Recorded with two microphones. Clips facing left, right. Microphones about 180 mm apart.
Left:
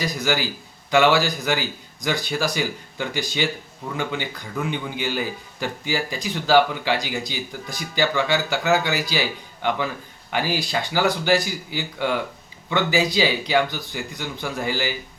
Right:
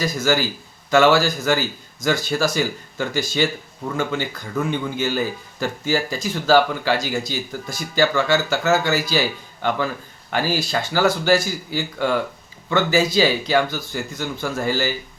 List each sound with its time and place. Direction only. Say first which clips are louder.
0.0 s speech: right 3 dB; 15° left (ahead or behind)